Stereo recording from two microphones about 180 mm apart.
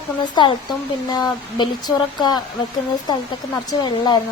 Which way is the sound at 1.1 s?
25° left (ahead or behind).